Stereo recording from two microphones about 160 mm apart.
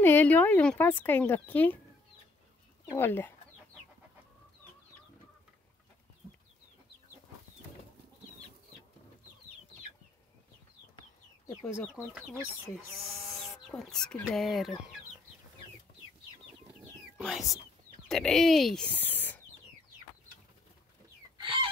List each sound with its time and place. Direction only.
0.0 s speech: 10° left (ahead or behind)
2.9 s speech: 15° left (ahead or behind)
12.9 s speech: centre (ahead or behind)
17.2 s speech: centre (ahead or behind)
21.4 s chicken: 35° right (ahead or behind)